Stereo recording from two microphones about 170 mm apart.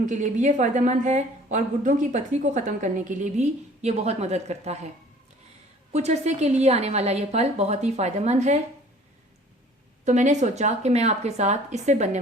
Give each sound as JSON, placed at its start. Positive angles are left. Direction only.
{"t": 0.0, "sound": "a woman's voice", "side_deg": -45}
{"t": 5.9, "sound": "a woman's voice", "side_deg": -40}
{"t": 10.0, "sound": "a woman's voice", "side_deg": -45}